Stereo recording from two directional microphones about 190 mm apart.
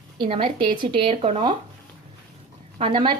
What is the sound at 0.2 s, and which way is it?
A woman's voice, 30° right (ahead or behind).